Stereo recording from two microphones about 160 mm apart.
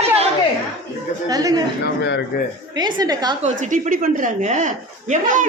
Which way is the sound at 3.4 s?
50° right (ahead or behind).